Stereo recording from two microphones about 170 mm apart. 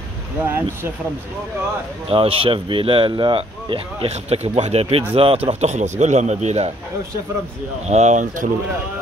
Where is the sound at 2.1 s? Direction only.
35° right (ahead or behind).